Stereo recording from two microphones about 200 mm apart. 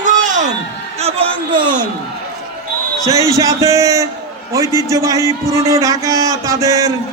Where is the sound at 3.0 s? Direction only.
15° right (ahead or behind).